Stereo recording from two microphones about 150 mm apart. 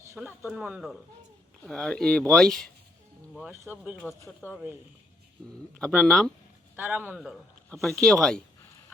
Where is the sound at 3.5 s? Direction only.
15° right (ahead or behind).